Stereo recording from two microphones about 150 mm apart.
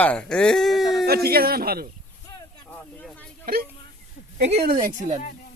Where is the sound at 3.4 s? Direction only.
85° right.